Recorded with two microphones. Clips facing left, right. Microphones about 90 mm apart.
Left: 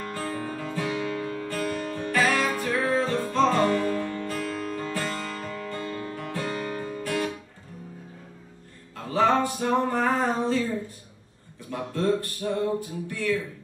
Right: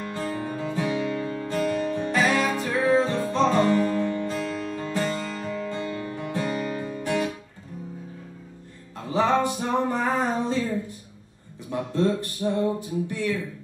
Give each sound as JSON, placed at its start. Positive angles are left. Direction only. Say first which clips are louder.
{"t": 0.1, "sound": "music", "louder": "right 3 dB", "side_deg": -20}
{"t": 7.0, "sound": "guitar", "louder": "right 3 dB", "side_deg": -20}
{"t": 8.9, "sound": "music", "louder": "even", "side_deg": -20}
{"t": 11.7, "sound": "a sound", "louder": "right 1 dB", "side_deg": -20}